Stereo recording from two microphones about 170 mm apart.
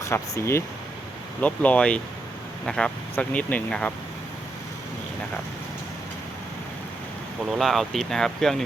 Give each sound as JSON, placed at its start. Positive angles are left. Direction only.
{"t": 0.0, "sound": "speech", "side_deg": 15}
{"t": 7.5, "sound": "speech", "side_deg": 0}